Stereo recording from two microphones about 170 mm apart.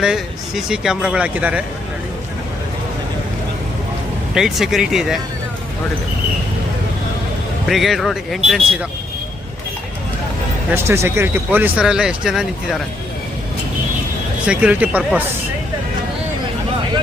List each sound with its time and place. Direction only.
0.0 s speech: 5° right (ahead or behind)
4.4 s speech: centre (ahead or behind)
7.7 s speech: centre (ahead or behind)
10.7 s speech: 15° right (ahead or behind)
14.4 s speech: 5° right (ahead or behind)